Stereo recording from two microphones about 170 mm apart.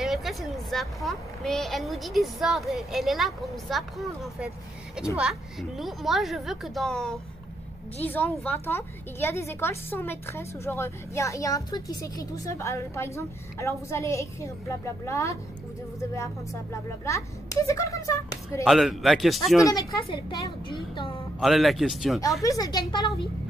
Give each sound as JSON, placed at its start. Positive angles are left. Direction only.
{"t": 0.0, "sound": "a woman's voice", "side_deg": 0}
{"t": 18.6, "sound": "a woman's voice", "side_deg": 0}
{"t": 19.6, "sound": "a woman's voice", "side_deg": 20}
{"t": 21.4, "sound": "a woman's voice", "side_deg": 0}
{"t": 22.4, "sound": "a woman's voice", "side_deg": 20}